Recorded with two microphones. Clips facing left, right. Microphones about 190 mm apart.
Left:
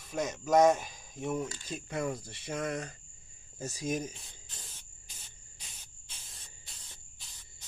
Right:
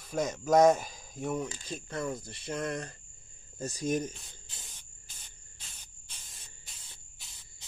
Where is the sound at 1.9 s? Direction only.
15° left (ahead or behind).